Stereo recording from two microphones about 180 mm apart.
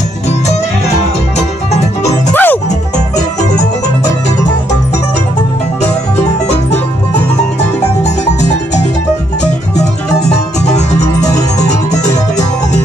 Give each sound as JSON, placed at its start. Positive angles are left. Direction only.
{"t": 0.5, "sound": "music", "side_deg": 35}
{"t": 2.3, "sound": "music", "side_deg": 10}
{"t": 10.3, "sound": "music", "side_deg": 40}